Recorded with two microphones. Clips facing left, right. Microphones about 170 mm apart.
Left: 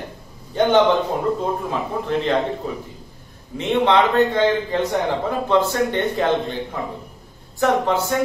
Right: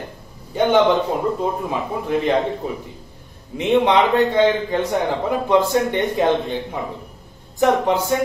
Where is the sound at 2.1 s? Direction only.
10° right (ahead or behind).